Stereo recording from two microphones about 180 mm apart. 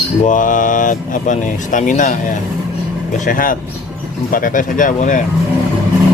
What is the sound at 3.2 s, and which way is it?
Speech, 50° left (ahead or behind).